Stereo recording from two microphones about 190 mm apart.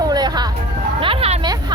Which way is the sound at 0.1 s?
20° right (ahead or behind).